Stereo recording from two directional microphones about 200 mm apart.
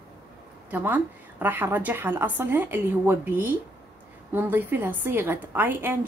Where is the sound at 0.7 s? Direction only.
10° right (ahead or behind).